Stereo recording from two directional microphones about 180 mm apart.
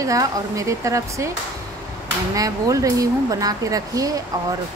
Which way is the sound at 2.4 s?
20° right (ahead or behind).